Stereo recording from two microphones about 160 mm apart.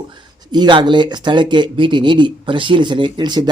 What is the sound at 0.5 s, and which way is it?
Speech, 30° right (ahead or behind).